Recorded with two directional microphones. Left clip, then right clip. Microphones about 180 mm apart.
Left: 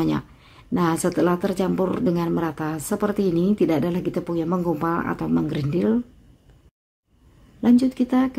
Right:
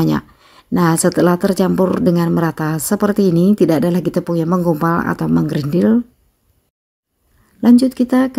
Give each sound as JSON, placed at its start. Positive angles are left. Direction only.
{"t": 0.0, "sound": "speech", "side_deg": -35}
{"t": 7.6, "sound": "speech", "side_deg": -35}